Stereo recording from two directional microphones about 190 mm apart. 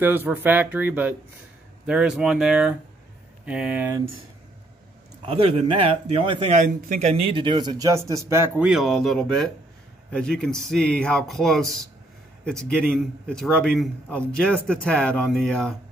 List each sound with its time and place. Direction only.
0.0 s a man's voice: 10° right (ahead or behind)
5.2 s a man's voice: 30° right (ahead or behind); by 15.7 s centre (ahead or behind)